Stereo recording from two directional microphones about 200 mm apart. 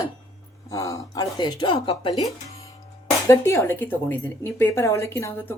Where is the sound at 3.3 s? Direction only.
10° left (ahead or behind).